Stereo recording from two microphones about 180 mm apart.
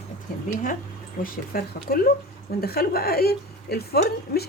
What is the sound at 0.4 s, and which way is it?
Speech, 45° left (ahead or behind).